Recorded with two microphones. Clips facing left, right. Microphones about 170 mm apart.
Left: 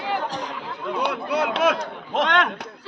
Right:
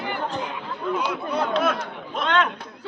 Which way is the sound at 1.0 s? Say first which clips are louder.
Left 6 dB; 70° left (ahead or behind).